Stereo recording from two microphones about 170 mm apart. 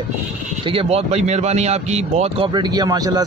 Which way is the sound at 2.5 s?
25° right (ahead or behind).